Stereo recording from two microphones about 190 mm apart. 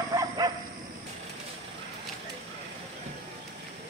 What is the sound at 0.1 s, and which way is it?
Bow-wow, 20° right (ahead or behind).